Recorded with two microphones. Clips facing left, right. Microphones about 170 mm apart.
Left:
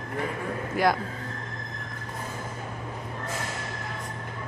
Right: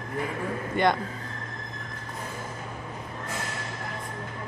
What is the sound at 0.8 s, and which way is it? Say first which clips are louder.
Speech: even; 5° left (ahead or behind).